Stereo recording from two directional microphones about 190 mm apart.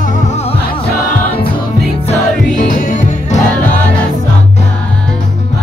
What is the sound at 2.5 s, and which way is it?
Music, 45° left (ahead or behind).